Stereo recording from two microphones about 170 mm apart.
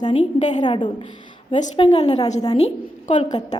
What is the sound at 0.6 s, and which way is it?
A woman's voice, 30° left (ahead or behind).